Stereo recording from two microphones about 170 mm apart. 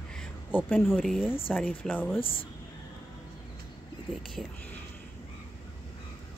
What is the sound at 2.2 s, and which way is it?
Speech, 30° left (ahead or behind).